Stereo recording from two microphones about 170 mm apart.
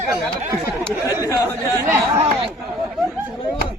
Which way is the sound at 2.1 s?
35° right (ahead or behind).